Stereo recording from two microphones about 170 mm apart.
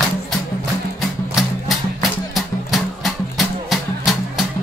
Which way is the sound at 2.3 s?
Centre (ahead or behind).